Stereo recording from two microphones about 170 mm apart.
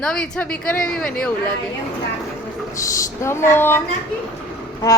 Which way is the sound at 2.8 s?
20° left (ahead or behind).